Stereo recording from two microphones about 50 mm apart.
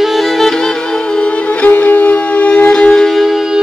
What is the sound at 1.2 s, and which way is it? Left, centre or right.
Music, left.